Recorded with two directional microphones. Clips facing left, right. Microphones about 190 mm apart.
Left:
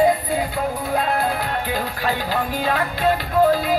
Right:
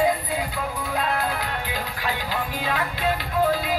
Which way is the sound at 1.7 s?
40° left (ahead or behind).